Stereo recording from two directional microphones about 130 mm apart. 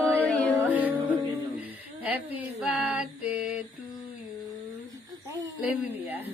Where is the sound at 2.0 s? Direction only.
10° right (ahead or behind).